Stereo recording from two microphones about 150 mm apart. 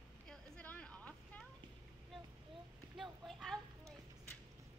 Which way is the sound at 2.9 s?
Centre (ahead or behind).